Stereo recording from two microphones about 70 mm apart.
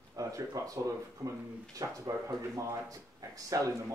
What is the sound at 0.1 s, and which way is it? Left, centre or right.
Speech, right.